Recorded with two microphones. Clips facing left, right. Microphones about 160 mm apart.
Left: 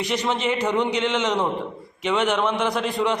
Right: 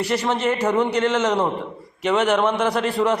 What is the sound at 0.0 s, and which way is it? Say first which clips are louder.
A man's voice: right 3 dB; 5° right (ahead or behind).